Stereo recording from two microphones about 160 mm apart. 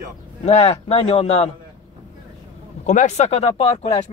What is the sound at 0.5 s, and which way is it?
Speech, 40° left (ahead or behind).